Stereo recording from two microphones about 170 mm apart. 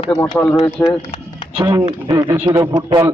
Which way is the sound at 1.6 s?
20° right (ahead or behind).